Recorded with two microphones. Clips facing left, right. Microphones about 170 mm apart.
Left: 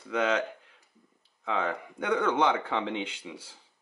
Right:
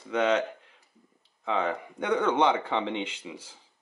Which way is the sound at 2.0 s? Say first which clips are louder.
Right 2 dB; 30° right (ahead or behind).